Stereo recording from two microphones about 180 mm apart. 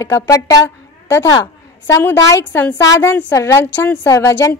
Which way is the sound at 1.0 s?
15° left (ahead or behind).